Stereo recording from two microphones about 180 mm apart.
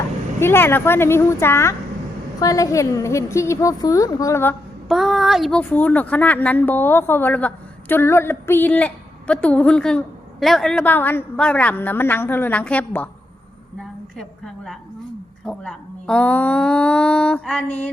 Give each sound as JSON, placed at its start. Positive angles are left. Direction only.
{"t": 0.3, "sound": "a woman's voice", "side_deg": 15}
{"t": 4.9, "sound": "a woman's voice", "side_deg": 0}
{"t": 14.2, "sound": "a woman's voice", "side_deg": 0}